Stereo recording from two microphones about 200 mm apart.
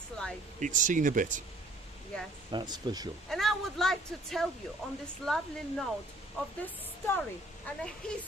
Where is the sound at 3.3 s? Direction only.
Centre (ahead or behind).